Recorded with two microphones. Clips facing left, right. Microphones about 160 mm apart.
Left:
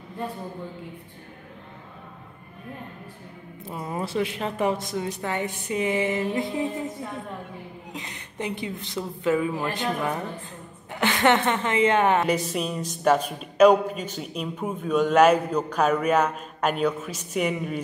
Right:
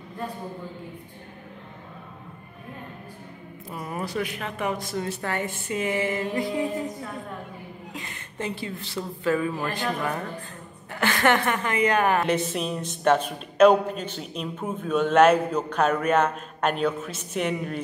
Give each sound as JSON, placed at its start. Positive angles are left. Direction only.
{"t": 3.7, "sound": "a woman's voice", "side_deg": 25}
{"t": 4.8, "sound": "a woman's voice", "side_deg": 15}
{"t": 7.9, "sound": "a woman's voice", "side_deg": 20}
{"t": 12.2, "sound": "a woman's voice", "side_deg": 0}